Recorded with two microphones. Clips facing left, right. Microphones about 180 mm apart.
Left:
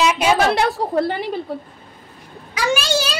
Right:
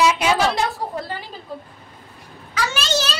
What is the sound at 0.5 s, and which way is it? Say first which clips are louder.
Speech: left 4 dB; 65° left (ahead or behind).